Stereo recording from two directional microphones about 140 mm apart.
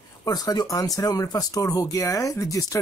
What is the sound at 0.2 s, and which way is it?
Speech, 25° left (ahead or behind).